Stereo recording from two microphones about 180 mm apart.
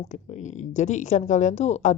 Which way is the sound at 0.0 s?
40° left (ahead or behind).